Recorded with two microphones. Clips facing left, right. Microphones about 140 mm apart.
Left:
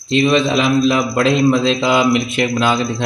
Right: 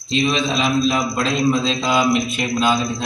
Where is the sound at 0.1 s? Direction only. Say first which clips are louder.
Left 6 dB; 60° left (ahead or behind).